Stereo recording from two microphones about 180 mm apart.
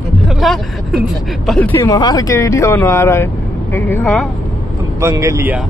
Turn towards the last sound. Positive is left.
turn(degrees=-15)  # may be behind; listen again after turning